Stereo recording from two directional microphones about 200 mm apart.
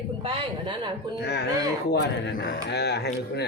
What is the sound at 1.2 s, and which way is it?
A man's voice, 55° left (ahead or behind).